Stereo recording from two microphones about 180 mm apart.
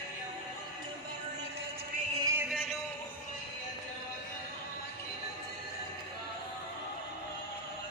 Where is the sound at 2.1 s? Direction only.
15° right (ahead or behind).